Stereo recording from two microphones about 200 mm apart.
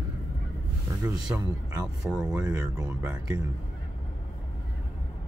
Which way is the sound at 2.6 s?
15° right (ahead or behind).